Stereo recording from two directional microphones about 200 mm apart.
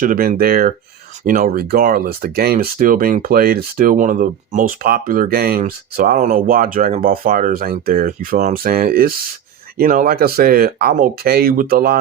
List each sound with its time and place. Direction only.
0.0 s speech: 45° right (ahead or behind)